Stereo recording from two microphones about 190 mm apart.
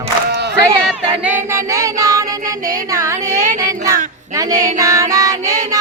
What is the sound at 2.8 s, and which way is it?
Child singing, 15° right (ahead or behind).